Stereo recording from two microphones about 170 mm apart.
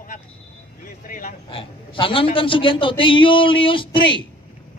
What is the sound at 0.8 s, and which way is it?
Vehicle, 55° left (ahead or behind).